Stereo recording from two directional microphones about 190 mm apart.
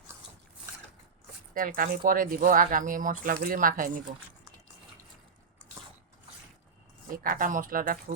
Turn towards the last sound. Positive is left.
turn(degrees=-45)  # may be behind; listen again after turning